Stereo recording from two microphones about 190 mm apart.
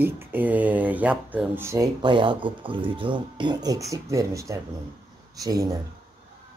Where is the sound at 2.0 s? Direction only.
25° right (ahead or behind).